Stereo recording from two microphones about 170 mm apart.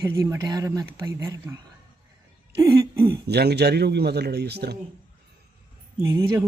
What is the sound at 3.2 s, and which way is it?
Speech, 70° right (ahead or behind).